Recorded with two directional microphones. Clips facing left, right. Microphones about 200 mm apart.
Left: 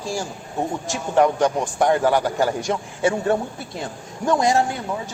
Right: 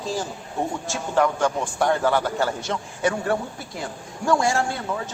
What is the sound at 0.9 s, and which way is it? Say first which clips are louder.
A man's voice: left 4 dB; 15° left (ahead or behind).